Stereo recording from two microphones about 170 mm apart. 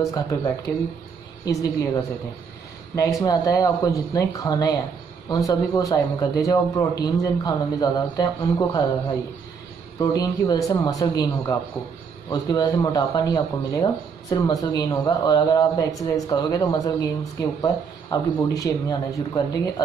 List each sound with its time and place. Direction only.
0.1 s a man's voice: 20° left (ahead or behind)
3.0 s a man's voice: 20° left (ahead or behind)
9.9 s a man's voice: 20° left (ahead or behind)